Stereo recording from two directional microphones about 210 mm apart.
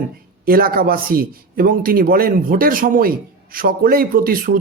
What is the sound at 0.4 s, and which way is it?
Speech, 45° right (ahead or behind).